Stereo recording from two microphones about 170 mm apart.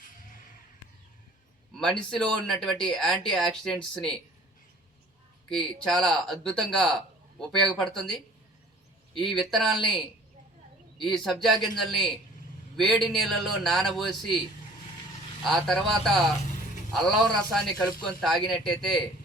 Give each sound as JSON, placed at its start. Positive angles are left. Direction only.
{"t": 1.8, "sound": "speech", "side_deg": 5}
{"t": 5.5, "sound": "speech", "side_deg": 5}
{"t": 9.2, "sound": "speech", "side_deg": 0}
{"t": 15.4, "sound": "speech", "side_deg": 0}